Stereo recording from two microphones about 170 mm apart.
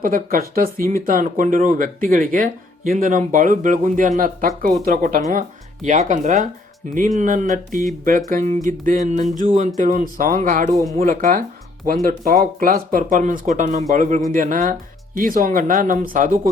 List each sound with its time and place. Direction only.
0.0 s speech: 55° right (ahead or behind)